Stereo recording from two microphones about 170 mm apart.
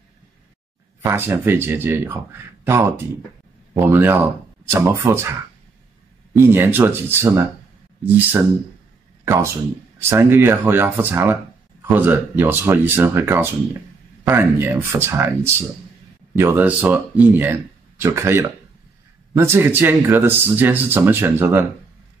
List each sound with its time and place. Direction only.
1.0 s a man's voice: 15° right (ahead or behind)
6.3 s a man's voice: 10° right (ahead or behind)